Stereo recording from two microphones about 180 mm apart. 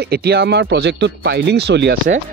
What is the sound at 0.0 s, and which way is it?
Speech, 60° right (ahead or behind).